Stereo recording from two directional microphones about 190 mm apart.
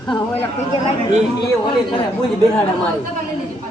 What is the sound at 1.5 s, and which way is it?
Speech, 25° left (ahead or behind).